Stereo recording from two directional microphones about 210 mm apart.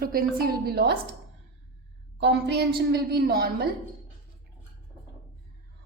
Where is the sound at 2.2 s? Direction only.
50° right (ahead or behind).